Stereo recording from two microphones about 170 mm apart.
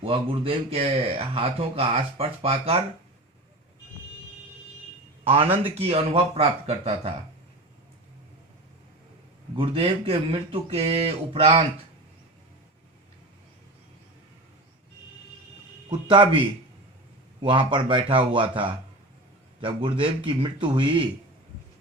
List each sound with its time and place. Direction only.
0.0 s speech: 30° right (ahead or behind)
5.2 s speech: 35° right (ahead or behind)
9.6 s speech: 35° right (ahead or behind)
15.9 s speech: 30° right (ahead or behind)